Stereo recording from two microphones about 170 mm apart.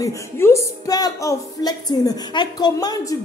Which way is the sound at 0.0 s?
15° left (ahead or behind).